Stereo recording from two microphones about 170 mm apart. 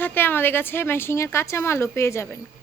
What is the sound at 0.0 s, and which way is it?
Speech, 10° left (ahead or behind).